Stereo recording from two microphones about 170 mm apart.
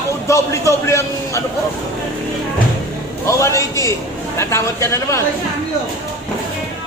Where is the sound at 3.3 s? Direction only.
15° left (ahead or behind).